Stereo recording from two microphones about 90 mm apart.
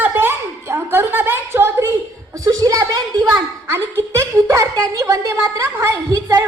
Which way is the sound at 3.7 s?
30° right (ahead or behind).